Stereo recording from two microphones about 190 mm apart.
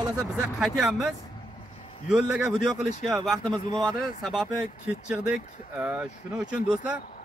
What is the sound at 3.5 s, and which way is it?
Speech, 20° right (ahead or behind).